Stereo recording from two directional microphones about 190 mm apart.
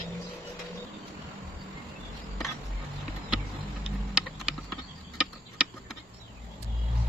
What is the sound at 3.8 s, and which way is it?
Vehicle, 5° right (ahead or behind).